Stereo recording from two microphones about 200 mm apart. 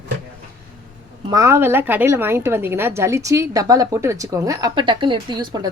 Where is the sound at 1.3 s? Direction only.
15° right (ahead or behind).